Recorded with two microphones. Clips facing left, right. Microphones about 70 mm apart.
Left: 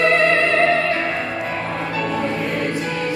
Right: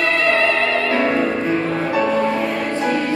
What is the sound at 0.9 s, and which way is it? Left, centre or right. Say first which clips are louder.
Music: right 4 dB; right.